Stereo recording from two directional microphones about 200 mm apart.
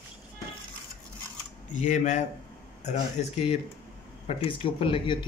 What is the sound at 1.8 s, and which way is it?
Speech, 35° left (ahead or behind).